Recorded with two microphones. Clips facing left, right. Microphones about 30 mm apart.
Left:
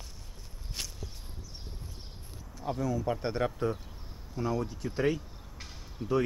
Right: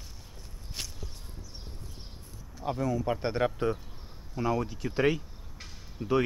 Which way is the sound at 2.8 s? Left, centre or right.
Right.